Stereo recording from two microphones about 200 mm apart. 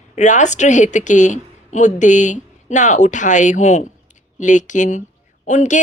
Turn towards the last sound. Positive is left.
turn(degrees=35)  # may be behind; listen again after turning